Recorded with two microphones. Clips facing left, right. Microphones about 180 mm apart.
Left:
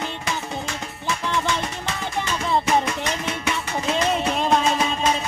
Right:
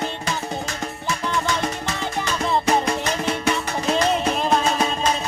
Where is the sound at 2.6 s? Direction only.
35° right (ahead or behind).